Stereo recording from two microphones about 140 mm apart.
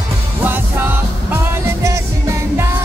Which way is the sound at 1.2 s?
20° right (ahead or behind).